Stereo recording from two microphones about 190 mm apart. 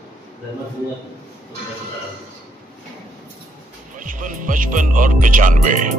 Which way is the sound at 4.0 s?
45° right (ahead or behind).